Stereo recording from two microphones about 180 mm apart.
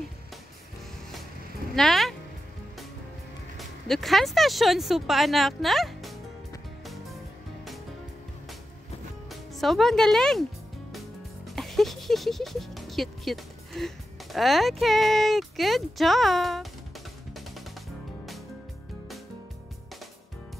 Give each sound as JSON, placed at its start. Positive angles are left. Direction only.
{"t": 1.8, "sound": "speech", "side_deg": 0}
{"t": 3.5, "sound": "speech", "side_deg": 0}
{"t": 9.3, "sound": "speech", "side_deg": 0}
{"t": 11.4, "sound": "speech", "side_deg": 0}